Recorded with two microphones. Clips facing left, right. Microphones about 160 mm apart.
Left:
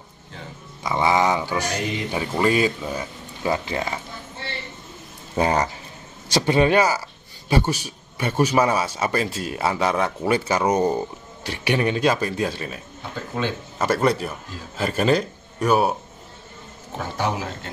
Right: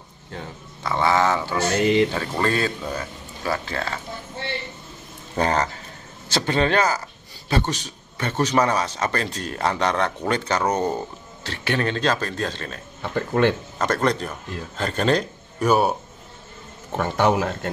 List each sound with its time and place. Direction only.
0.8 s speech: 15° left (ahead or behind)
5.3 s speech: 10° left (ahead or behind)
13.1 s a man's voice: 60° right (ahead or behind)
13.7 s speech: 10° left (ahead or behind)
16.9 s a man's voice: 60° right (ahead or behind)